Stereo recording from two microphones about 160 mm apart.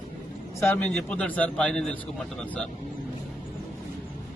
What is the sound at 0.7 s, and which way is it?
Speech, 10° left (ahead or behind).